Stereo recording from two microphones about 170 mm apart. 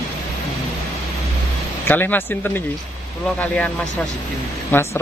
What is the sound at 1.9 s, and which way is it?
Speech, 10° left (ahead or behind).